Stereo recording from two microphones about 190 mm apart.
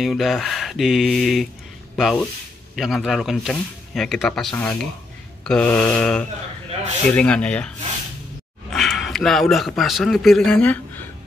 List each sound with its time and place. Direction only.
0.0 s speech: centre (ahead or behind)
8.7 s a man's voice: centre (ahead or behind)